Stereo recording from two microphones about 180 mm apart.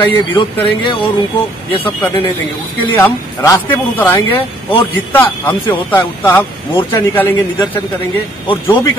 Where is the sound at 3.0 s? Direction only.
15° left (ahead or behind).